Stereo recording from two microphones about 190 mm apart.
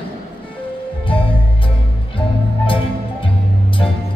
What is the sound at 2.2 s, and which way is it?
Music, 30° left (ahead or behind).